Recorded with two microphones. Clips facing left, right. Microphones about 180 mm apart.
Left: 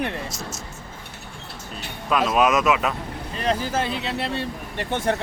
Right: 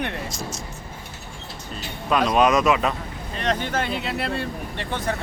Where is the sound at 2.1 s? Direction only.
Centre (ahead or behind).